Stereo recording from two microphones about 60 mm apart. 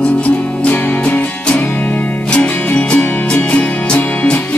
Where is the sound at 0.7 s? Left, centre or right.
Left.